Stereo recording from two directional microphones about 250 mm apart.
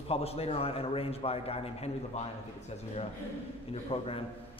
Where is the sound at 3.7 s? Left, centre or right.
Left.